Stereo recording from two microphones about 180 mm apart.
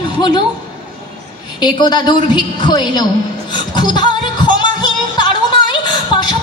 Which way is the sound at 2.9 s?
25° left (ahead or behind).